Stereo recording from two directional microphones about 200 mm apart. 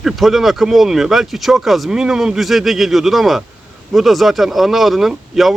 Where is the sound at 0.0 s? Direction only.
Centre (ahead or behind).